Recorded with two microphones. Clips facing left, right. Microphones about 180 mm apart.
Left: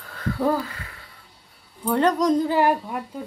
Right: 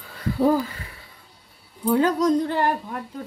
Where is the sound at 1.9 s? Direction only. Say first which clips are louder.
Even; centre (ahead or behind).